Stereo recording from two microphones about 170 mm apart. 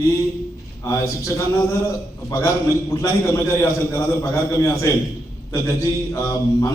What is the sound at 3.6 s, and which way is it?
A man's voice, 20° left (ahead or behind).